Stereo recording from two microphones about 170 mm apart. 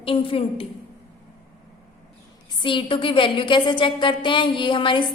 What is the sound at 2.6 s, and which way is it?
A woman's voice, 30° left (ahead or behind).